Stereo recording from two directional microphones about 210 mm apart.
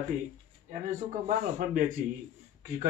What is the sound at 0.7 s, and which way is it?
Speech, 35° right (ahead or behind).